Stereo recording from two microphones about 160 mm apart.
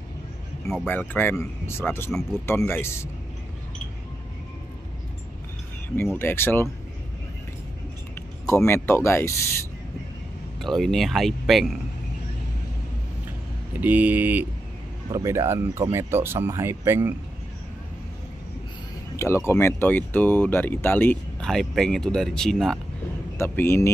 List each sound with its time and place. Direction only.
0.8 s speech: 10° left (ahead or behind)
6.1 s speech: 15° left (ahead or behind)
8.5 s speech: 15° left (ahead or behind)
10.6 s speech: centre (ahead or behind)
13.7 s speech: 10° right (ahead or behind)
19.1 s speech: 15° left (ahead or behind)
23.3 s speech: 15° left (ahead or behind)